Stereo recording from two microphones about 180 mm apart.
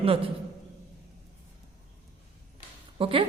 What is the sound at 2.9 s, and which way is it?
Speech, 30° right (ahead or behind).